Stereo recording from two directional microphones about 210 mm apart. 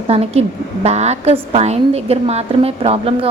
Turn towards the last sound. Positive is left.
turn(degrees=-25)  # may be behind; listen again after turning